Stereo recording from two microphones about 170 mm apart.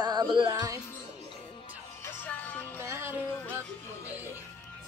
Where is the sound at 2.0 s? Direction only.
10° left (ahead or behind).